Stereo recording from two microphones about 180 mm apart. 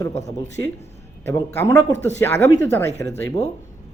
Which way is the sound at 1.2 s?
15° left (ahead or behind).